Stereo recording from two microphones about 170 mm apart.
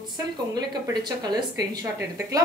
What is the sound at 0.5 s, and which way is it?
A woman's voice, 25° right (ahead or behind).